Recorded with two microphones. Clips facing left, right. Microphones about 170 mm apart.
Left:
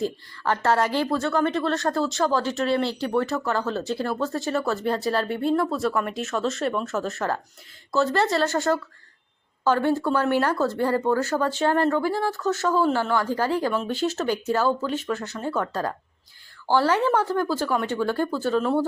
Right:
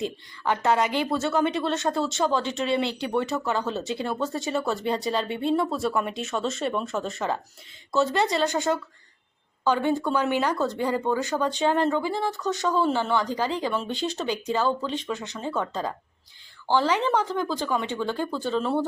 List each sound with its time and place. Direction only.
0.0 s a woman's voice: 15° right (ahead or behind)
1.5 s speech: centre (ahead or behind)
10.8 s a woman's voice: 15° right (ahead or behind)
11.3 s speech: 5° left (ahead or behind)